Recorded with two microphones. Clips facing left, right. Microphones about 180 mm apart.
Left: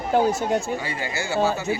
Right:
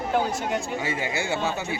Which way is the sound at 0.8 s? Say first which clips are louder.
Right 1 dB; 20° right (ahead or behind).